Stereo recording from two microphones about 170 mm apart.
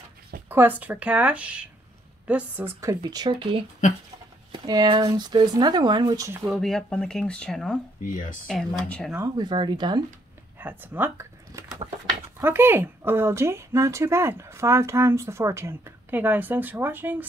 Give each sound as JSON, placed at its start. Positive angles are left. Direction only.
{"t": 0.5, "sound": "speech", "side_deg": -10}
{"t": 6.4, "sound": "speech", "side_deg": 0}
{"t": 8.0, "sound": "speech", "side_deg": 50}
{"t": 8.5, "sound": "speech", "side_deg": 5}
{"t": 9.1, "sound": "speech", "side_deg": -20}
{"t": 10.6, "sound": "speech", "side_deg": -10}